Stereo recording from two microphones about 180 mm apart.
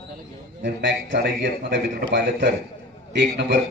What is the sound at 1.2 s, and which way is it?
Speech, 55° right (ahead or behind).